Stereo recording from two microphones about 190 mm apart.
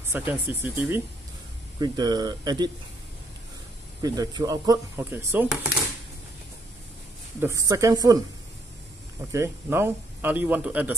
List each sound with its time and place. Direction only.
0.1 s speech: 10° right (ahead or behind)
1.8 s speech: 20° right (ahead or behind)
4.0 s speech: 20° right (ahead or behind)
7.3 s speech: 15° right (ahead or behind)
9.3 s speech: 15° right (ahead or behind)